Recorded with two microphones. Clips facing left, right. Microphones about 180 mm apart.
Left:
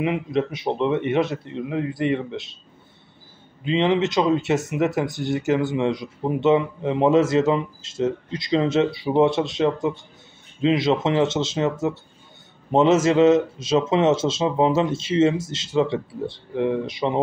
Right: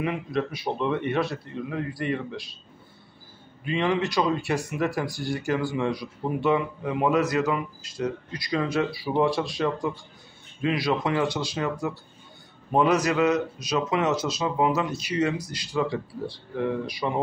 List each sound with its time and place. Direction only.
0.0 s speech: 20° left (ahead or behind)
3.6 s speech: 20° left (ahead or behind)